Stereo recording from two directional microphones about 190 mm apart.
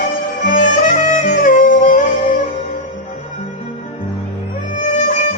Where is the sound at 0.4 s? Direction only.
45° left (ahead or behind).